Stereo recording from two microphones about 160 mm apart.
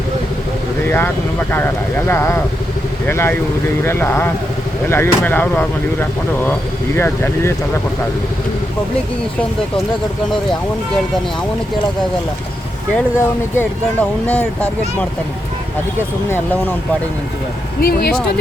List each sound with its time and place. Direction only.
0.9 s speech: 10° left (ahead or behind)
12.9 s speech: 10° left (ahead or behind)
16.3 s speech: 10° left (ahead or behind)
17.8 s speech: 70° left (ahead or behind)